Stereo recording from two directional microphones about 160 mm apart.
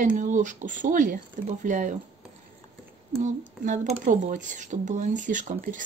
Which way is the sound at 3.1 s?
50° right (ahead or behind).